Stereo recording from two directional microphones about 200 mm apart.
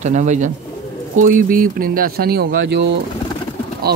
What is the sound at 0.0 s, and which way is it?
Speech, 35° right (ahead or behind).